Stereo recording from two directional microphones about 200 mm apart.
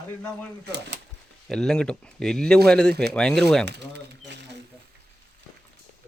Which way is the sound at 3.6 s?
55° right (ahead or behind).